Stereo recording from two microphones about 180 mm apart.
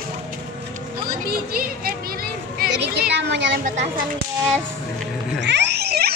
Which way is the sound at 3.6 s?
40° right (ahead or behind).